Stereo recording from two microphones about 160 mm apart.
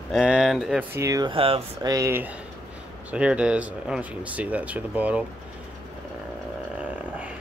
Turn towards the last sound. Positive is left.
turn(degrees=-10)  # may be behind; listen again after turning